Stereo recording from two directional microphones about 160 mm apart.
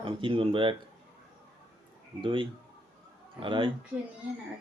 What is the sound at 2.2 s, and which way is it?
Speech, 30° right (ahead or behind).